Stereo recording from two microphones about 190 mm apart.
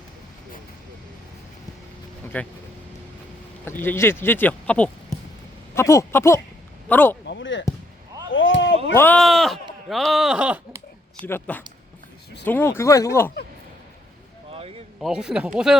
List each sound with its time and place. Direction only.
2.2 s vehicle: 10° left (ahead or behind)
3.7 s speech: 10° left (ahead or behind)
7.3 s basketball bounce: 75° left (ahead or behind)
8.3 s a sound: 90° left; by 8.8 s 75° left (ahead or behind)
8.9 s speech: 10° left (ahead or behind); by 10.8 s 5° right (ahead or behind)
11.3 s speech: 10° left (ahead or behind)
14.5 s a sound: 30° right (ahead or behind)
15.0 s speech: 5° right (ahead or behind)